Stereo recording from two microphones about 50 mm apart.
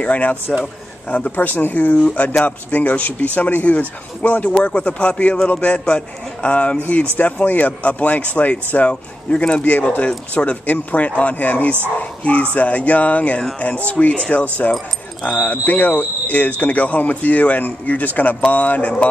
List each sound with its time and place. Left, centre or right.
0.0 s a man's voice: left